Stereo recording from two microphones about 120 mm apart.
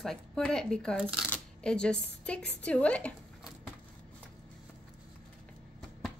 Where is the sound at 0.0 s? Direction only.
5° left (ahead or behind).